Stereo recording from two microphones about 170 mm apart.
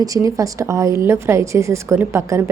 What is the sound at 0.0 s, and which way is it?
A woman's voice, 20° right (ahead or behind).